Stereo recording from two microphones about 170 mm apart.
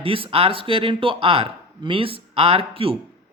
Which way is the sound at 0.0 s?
30° right (ahead or behind).